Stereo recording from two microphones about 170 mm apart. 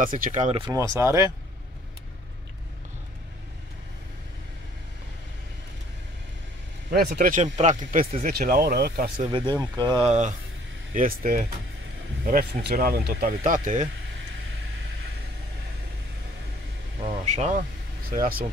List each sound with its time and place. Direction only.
0.0 s speech: 55° right (ahead or behind)
0.6 s speech: 20° right (ahead or behind)
6.9 s speech: 65° right (ahead or behind)
9.3 s speech: 25° right (ahead or behind)
10.0 s speech: 40° right (ahead or behind)
11.0 s speech: 55° right (ahead or behind)
17.0 s speech: 40° right (ahead or behind)
18.1 s speech: 55° right (ahead or behind)